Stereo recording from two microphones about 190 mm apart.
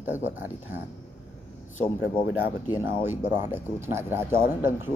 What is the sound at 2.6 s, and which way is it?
Speech, 20° left (ahead or behind).